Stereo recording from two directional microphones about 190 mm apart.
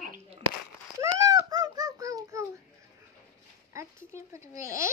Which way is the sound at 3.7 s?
15° right (ahead or behind).